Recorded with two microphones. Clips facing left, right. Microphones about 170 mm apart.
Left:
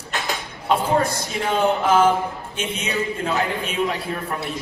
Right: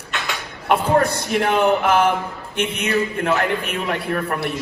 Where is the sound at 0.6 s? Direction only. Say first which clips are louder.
Right 2 dB; 60° right (ahead or behind).